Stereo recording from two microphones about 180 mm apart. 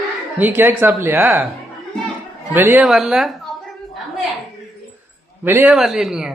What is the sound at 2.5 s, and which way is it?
Speech, 10° right (ahead or behind).